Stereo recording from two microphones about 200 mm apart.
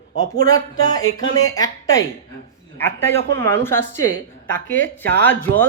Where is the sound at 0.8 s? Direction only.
20° left (ahead or behind).